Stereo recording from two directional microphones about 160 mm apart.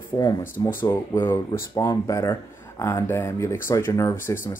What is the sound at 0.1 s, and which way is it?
Speech, 25° left (ahead or behind).